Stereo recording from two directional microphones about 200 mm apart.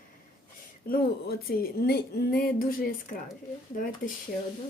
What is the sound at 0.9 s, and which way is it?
Speech, 50° left (ahead or behind).